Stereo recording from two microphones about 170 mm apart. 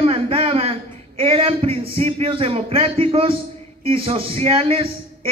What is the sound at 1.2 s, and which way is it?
A man's voice, 35° right (ahead or behind).